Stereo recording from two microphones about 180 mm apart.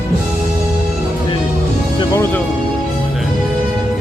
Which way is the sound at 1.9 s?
15° left (ahead or behind).